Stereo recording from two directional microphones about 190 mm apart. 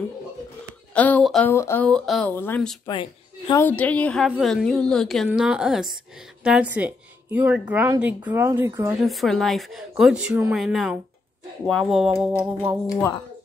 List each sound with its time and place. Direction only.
0.9 s speech: 10° left (ahead or behind)
2.9 s a woman's voice: 25° left (ahead or behind)
3.6 s speech: 10° left (ahead or behind); by 8.9 s 15° right (ahead or behind)
8.9 s speech: centre (ahead or behind)
12.3 s speech: 15° right (ahead or behind)
12.8 s speech: 15° left (ahead or behind)